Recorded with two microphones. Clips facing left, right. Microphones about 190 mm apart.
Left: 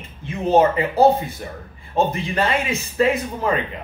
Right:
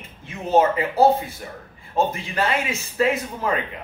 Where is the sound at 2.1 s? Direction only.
5° right (ahead or behind).